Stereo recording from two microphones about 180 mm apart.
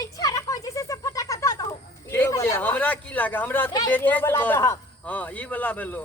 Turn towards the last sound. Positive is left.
turn(degrees=10)  # may be behind; listen again after turning